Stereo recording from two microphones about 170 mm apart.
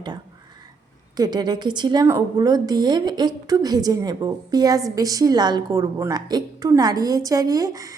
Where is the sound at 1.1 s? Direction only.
25° right (ahead or behind).